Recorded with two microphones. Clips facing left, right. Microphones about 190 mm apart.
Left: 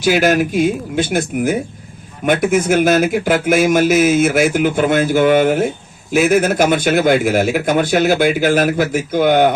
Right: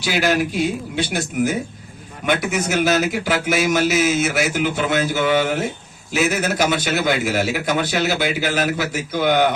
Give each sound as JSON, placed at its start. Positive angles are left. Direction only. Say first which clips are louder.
{"t": 0.0, "sound": "speech", "louder": "left 6 dB", "side_deg": 45}